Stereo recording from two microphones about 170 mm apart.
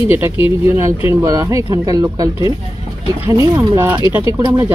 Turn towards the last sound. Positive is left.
turn(degrees=-20)  # may be behind; listen again after turning